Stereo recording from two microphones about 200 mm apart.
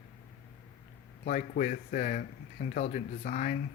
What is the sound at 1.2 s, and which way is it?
Speech, 40° left (ahead or behind).